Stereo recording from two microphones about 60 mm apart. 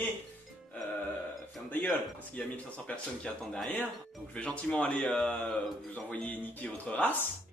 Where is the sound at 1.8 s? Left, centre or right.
Left.